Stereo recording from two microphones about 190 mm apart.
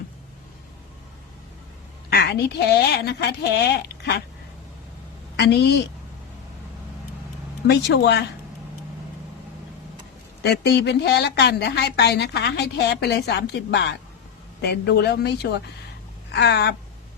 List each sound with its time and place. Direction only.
2.0 s a woman's voice: 60° left (ahead or behind)
5.4 s a woman's voice: 60° left (ahead or behind)
7.7 s a woman's voice: 60° left (ahead or behind)
10.4 s a woman's voice: 60° left (ahead or behind)